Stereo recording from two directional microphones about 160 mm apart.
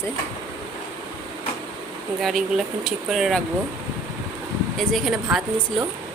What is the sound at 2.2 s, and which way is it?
Speech, centre (ahead or behind).